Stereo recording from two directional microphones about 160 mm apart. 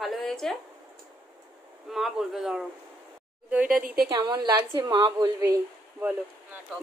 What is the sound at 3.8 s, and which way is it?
Speech, 70° right (ahead or behind).